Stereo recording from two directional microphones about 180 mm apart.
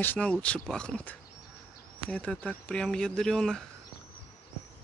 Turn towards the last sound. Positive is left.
turn(degrees=5)  # may be behind; listen again after turning